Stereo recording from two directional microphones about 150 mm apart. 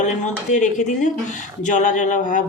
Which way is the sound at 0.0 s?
55° left (ahead or behind).